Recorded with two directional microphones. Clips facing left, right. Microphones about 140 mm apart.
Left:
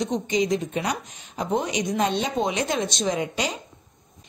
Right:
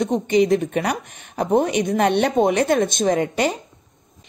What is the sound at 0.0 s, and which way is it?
A woman's voice, 60° right (ahead or behind).